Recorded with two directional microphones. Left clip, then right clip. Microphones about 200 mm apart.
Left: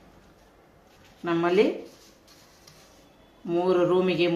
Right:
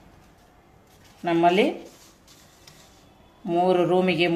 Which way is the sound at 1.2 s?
40° right (ahead or behind).